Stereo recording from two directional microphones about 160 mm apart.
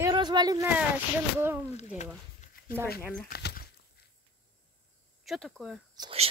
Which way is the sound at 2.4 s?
50° left (ahead or behind).